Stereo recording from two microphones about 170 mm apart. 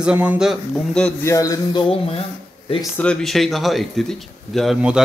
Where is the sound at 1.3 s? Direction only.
20° left (ahead or behind).